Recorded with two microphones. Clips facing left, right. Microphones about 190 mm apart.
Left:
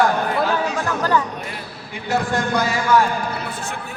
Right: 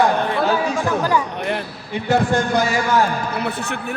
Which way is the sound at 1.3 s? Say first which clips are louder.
Right 8 dB; 65° right (ahead or behind).